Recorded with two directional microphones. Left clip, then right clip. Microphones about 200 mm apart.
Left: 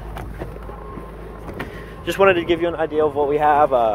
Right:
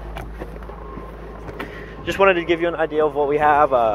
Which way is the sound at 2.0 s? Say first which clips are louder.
Left 1 dB; 25° left (ahead or behind).